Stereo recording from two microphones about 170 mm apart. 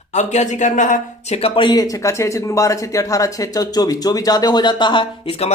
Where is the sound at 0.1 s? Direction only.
45° left (ahead or behind).